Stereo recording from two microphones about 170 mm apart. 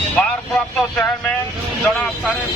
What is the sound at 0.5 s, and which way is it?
Vehicle, 5° left (ahead or behind).